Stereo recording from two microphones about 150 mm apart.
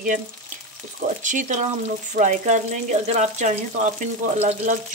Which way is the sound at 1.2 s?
55° right (ahead or behind).